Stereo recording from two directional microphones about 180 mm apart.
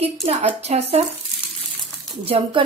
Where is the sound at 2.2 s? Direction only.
30° right (ahead or behind).